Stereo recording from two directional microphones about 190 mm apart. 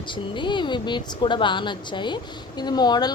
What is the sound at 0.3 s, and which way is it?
A woman's voice, 25° left (ahead or behind).